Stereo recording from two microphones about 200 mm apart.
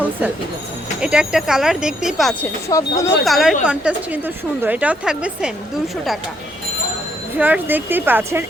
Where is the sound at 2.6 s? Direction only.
15° left (ahead or behind).